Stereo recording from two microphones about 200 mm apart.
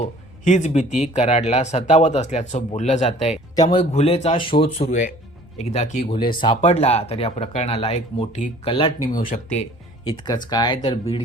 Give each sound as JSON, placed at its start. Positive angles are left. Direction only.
{"t": 0.0, "sound": "a man's voice", "side_deg": 40}
{"t": 6.1, "sound": "speech", "side_deg": 25}
{"t": 9.1, "sound": "speech", "side_deg": 40}
{"t": 10.1, "sound": "speech", "side_deg": 20}